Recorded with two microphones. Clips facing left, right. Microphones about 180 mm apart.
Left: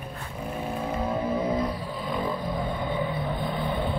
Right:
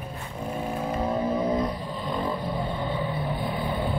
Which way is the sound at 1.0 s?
15° right (ahead or behind).